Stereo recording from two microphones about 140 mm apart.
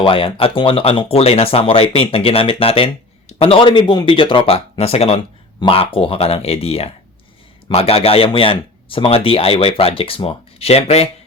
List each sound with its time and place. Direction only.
0.0 s speech: 40° left (ahead or behind)